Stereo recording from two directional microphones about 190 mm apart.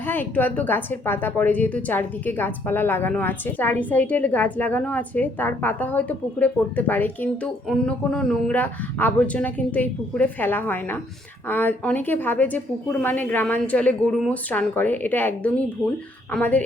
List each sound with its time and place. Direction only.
0.0 s a woman's voice: 10° left (ahead or behind)